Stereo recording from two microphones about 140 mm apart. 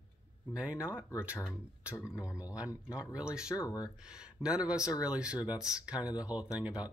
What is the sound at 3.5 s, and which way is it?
Speech, 25° left (ahead or behind).